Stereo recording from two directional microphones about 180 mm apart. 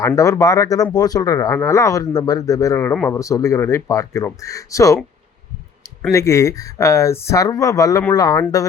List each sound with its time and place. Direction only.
0.2 s speech: 20° left (ahead or behind)
6.0 s speech: 15° left (ahead or behind)